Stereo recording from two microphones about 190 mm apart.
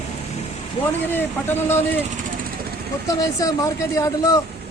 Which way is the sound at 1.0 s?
10° left (ahead or behind).